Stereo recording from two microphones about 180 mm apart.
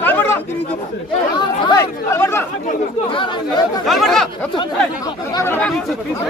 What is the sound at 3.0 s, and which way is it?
Speech, 25° left (ahead or behind).